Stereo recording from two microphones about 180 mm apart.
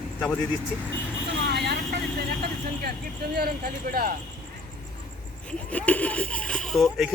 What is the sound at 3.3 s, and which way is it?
Speech, 60° right (ahead or behind).